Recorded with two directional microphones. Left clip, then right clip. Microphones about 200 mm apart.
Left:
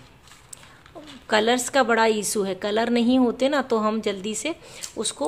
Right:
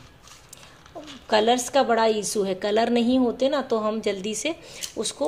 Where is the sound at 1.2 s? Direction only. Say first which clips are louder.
Even; 10° left (ahead or behind).